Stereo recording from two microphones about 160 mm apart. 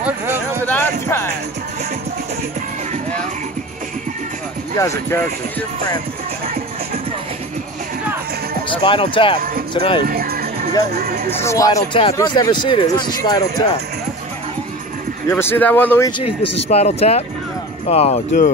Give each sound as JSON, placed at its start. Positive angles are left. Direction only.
{"t": 0.0, "sound": "a sound", "side_deg": -15}
{"t": 0.7, "sound": "music", "side_deg": 15}
{"t": 4.7, "sound": "speech", "side_deg": 20}
{"t": 8.6, "sound": "speech", "side_deg": 30}
{"t": 10.0, "sound": "music", "side_deg": -70}
{"t": 11.0, "sound": "speech", "side_deg": -75}
{"t": 11.2, "sound": "speech", "side_deg": 15}
{"t": 15.2, "sound": "speech", "side_deg": 15}
{"t": 16.6, "sound": "speech", "side_deg": 40}